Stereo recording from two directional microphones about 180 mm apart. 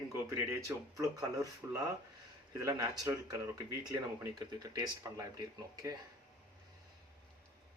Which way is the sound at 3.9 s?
20° right (ahead or behind).